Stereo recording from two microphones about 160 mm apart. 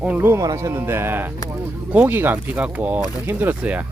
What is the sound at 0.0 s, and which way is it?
Speech, 10° right (ahead or behind).